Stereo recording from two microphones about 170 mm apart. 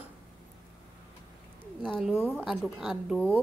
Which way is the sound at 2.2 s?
5° right (ahead or behind).